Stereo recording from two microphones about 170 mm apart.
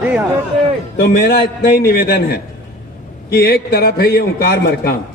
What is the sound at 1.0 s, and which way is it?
A man's voice, 70° left (ahead or behind).